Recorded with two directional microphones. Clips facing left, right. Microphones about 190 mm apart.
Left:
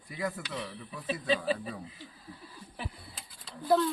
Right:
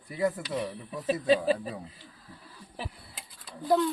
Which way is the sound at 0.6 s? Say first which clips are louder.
Right 6 dB; 45° right (ahead or behind).